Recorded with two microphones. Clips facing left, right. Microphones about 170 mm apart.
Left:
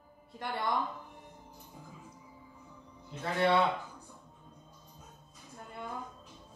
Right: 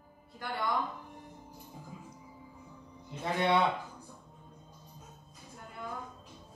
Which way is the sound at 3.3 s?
15° right (ahead or behind).